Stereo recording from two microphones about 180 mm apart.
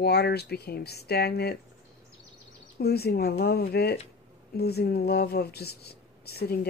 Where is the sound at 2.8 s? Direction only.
60° left (ahead or behind).